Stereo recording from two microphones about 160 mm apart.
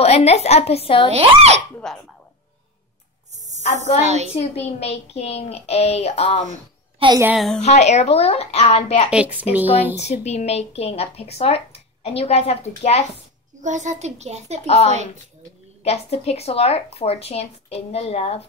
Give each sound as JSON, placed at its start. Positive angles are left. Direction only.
{"t": 0.0, "sound": "speech", "side_deg": 40}
{"t": 1.1, "sound": "a child's voice", "side_deg": -40}
{"t": 1.8, "sound": "speech", "side_deg": 5}
{"t": 3.3, "sound": "a sound", "side_deg": -45}
{"t": 3.6, "sound": "a woman's voice", "side_deg": 45}
{"t": 4.0, "sound": "a child's voice", "side_deg": -45}
{"t": 4.4, "sound": "speech", "side_deg": 40}
{"t": 7.0, "sound": "a child's voice", "side_deg": -35}
{"t": 7.3, "sound": "speech", "side_deg": 0}
{"t": 7.6, "sound": "speech", "side_deg": 45}
{"t": 9.1, "sound": "speech", "side_deg": -10}
{"t": 9.9, "sound": "speech", "side_deg": 45}
{"t": 13.6, "sound": "a child's voice", "side_deg": -50}
{"t": 15.8, "sound": "speech", "side_deg": 40}